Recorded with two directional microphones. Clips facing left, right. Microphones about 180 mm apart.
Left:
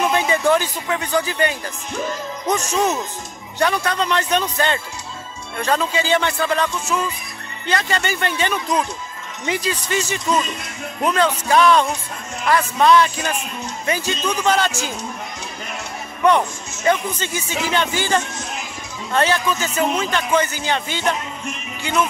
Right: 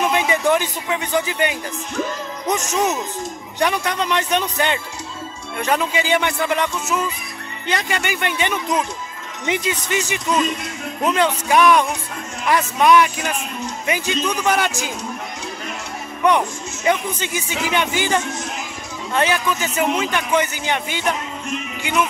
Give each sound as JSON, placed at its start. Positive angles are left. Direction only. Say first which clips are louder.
{"t": 0.1, "sound": "speech", "louder": "left 1 dB", "side_deg": -15}
{"t": 16.3, "sound": "speech", "louder": "left 1 dB", "side_deg": -15}